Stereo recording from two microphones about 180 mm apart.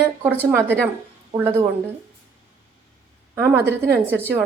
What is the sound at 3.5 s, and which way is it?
Speech, 65° right (ahead or behind).